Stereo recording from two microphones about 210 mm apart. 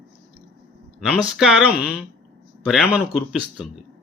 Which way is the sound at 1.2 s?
5° right (ahead or behind).